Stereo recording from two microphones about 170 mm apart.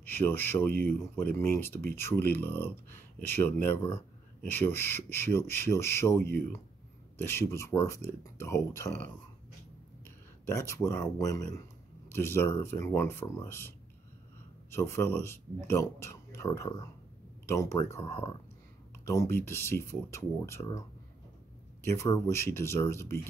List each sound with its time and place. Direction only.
0.0 s speech: 10° left (ahead or behind)
19.0 s speech: 15° left (ahead or behind)
21.8 s speech: 15° left (ahead or behind)